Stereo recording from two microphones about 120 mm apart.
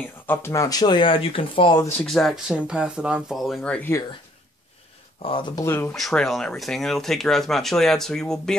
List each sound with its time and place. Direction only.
0.3 s speech: 25° left (ahead or behind); by 1.8 s 45° left (ahead or behind)
2.0 s speech: centre (ahead or behind)
5.2 s speech: 45° left (ahead or behind)
5.6 s speech: 20° left (ahead or behind)
5.9 s speech: centre (ahead or behind)